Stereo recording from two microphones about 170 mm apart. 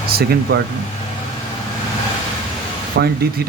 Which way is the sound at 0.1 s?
65° right (ahead or behind).